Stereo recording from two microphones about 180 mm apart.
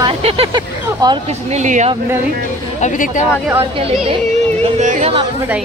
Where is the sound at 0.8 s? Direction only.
20° right (ahead or behind).